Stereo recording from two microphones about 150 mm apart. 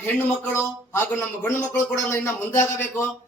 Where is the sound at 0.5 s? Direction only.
15° left (ahead or behind).